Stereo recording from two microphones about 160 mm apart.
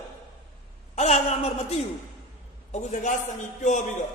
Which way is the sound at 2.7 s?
50° left (ahead or behind).